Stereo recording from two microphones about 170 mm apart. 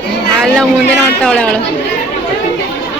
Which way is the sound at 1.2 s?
5° left (ahead or behind).